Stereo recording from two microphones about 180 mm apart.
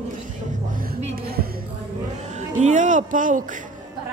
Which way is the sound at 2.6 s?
45° right (ahead or behind).